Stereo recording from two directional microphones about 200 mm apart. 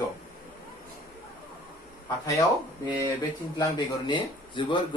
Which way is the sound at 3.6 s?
25° left (ahead or behind).